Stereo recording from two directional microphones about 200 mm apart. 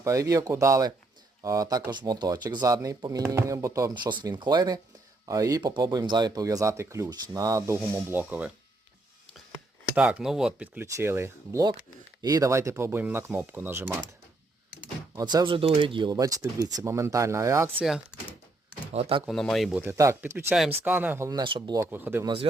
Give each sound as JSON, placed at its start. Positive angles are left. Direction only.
{"t": 0.0, "sound": "speech", "side_deg": -15}
{"t": 9.9, "sound": "speech", "side_deg": -5}
{"t": 15.1, "sound": "speech", "side_deg": -20}
{"t": 18.9, "sound": "speech", "side_deg": -30}
{"t": 19.2, "sound": "speech", "side_deg": 0}
{"t": 19.8, "sound": "speech", "side_deg": -15}
{"t": 21.8, "sound": "speech", "side_deg": -10}